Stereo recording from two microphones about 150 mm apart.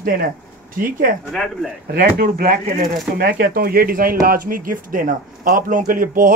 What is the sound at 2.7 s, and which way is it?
A man's voice, 70° right (ahead or behind).